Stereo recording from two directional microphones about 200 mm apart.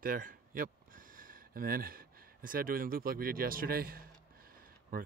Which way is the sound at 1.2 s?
45° right (ahead or behind).